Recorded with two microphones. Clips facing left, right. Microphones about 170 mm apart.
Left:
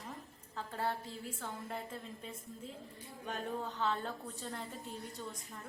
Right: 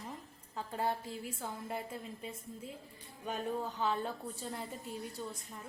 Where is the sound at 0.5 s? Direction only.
15° right (ahead or behind).